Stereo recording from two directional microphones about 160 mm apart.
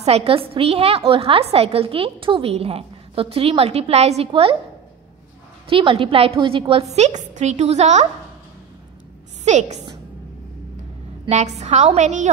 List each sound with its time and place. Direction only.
0.0 s a woman's voice: 40° right (ahead or behind)
5.7 s a woman's voice: 35° right (ahead or behind)
9.4 s a woman's voice: 45° right (ahead or behind)
11.2 s a woman's voice: 45° right (ahead or behind)